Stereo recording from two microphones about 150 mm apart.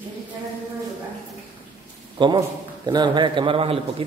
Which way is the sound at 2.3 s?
25° right (ahead or behind).